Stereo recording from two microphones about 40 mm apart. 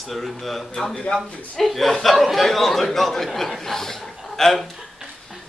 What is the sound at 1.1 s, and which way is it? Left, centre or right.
Speech, left.